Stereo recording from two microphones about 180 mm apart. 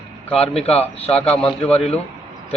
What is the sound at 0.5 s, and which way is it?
Speech, 35° left (ahead or behind).